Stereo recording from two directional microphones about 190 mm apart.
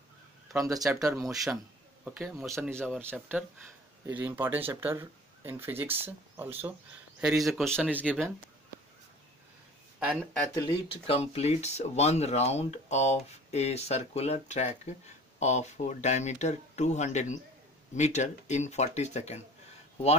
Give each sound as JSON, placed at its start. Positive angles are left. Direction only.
{"t": 0.6, "sound": "speech", "side_deg": -15}
{"t": 1.0, "sound": "speech", "side_deg": 0}
{"t": 4.0, "sound": "speech", "side_deg": -10}
{"t": 9.9, "sound": "speech", "side_deg": -5}
{"t": 10.5, "sound": "speech", "side_deg": 20}
{"t": 11.1, "sound": "speech", "side_deg": 30}